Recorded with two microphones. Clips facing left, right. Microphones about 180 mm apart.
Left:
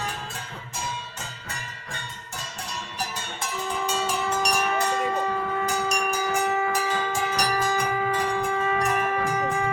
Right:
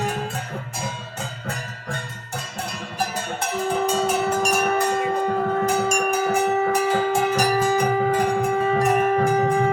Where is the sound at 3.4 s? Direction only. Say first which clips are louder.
Right 7 dB; 60° right (ahead or behind).